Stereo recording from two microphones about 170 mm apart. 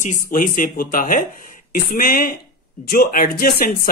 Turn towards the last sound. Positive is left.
turn(degrees=60)  # may be behind; listen again after turning